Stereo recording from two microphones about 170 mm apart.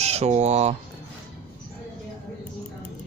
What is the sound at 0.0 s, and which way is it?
Speech, 40° right (ahead or behind).